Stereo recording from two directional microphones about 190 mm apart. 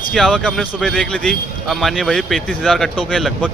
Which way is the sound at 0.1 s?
Centre (ahead or behind).